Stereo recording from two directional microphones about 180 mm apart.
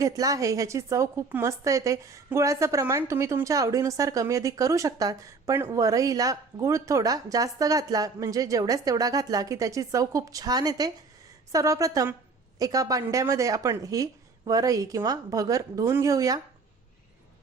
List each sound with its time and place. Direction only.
0.0 s a woman's voice: 20° right (ahead or behind)